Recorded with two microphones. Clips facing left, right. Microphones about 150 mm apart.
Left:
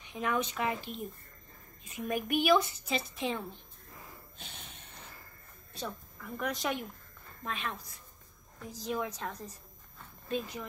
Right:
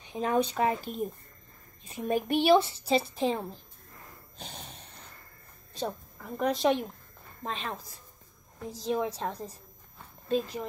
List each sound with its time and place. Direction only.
0.0 s speech: 30° right (ahead or behind)
4.4 s snort: 35° right (ahead or behind)
5.7 s a woman's voice: 40° right (ahead or behind)